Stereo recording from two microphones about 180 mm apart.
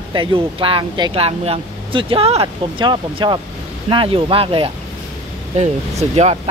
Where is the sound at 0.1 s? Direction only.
30° right (ahead or behind).